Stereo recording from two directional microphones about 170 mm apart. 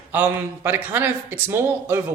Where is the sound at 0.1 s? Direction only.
10° right (ahead or behind).